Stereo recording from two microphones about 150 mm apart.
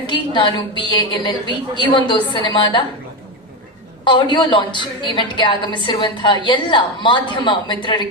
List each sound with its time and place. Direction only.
0.1 s a woman's voice: 30° left (ahead or behind)
4.0 s a woman's voice: 30° left (ahead or behind)